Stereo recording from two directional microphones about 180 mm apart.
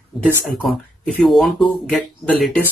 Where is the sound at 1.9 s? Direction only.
5° left (ahead or behind).